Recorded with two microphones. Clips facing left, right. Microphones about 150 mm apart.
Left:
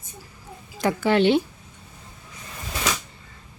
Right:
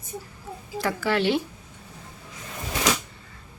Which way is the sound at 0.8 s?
20° left (ahead or behind).